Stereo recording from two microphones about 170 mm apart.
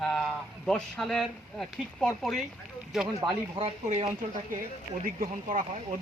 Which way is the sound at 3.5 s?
35° right (ahead or behind).